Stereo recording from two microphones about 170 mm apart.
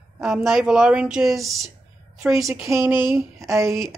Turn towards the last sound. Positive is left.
turn(degrees=-15)  # may be behind; listen again after turning